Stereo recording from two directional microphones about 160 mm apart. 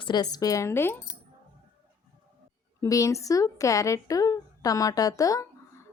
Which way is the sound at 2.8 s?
20° left (ahead or behind).